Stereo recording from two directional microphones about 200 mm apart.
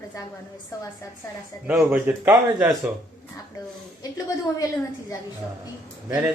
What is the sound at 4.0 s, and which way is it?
Speech, 15° left (ahead or behind).